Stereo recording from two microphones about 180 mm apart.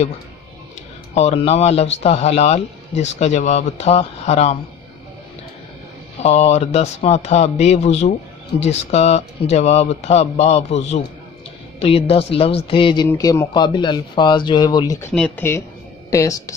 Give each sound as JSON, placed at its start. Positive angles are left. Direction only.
{"t": 1.1, "sound": "speech", "side_deg": 35}
{"t": 6.2, "sound": "speech", "side_deg": 35}